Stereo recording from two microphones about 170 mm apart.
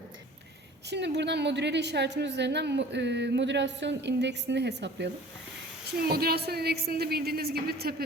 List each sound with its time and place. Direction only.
0.9 s a woman's voice: 85° right
5.9 s a woman's voice: 65° right (ahead or behind)